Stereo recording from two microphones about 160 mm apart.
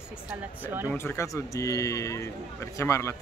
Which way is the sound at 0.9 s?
15° left (ahead or behind).